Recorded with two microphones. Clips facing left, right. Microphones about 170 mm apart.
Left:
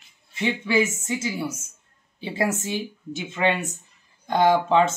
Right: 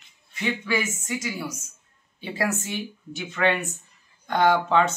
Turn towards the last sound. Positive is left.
turn(degrees=25)  # may be behind; listen again after turning